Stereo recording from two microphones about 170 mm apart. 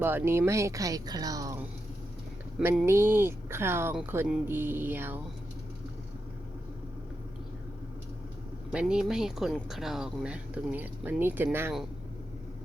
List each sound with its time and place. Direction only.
0.0 s speech: 10° right (ahead or behind)
2.6 s speech: 10° right (ahead or behind)
8.7 s speech: 5° right (ahead or behind)